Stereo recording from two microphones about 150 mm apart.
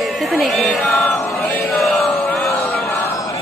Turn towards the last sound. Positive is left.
turn(degrees=20)  # may be behind; listen again after turning